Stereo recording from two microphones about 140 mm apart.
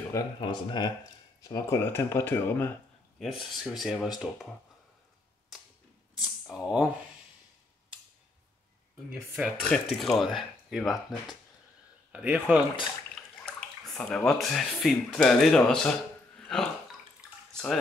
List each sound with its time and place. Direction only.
0.4 s speech: 35° left (ahead or behind); by 2.7 s 15° left (ahead or behind)
3.2 s speech: centre (ahead or behind)
6.5 s speech: 5° right (ahead or behind)
9.4 s a man's voice: centre (ahead or behind)
13.1 s speech: 5° left (ahead or behind)
17.2 s drip: 5° right (ahead or behind)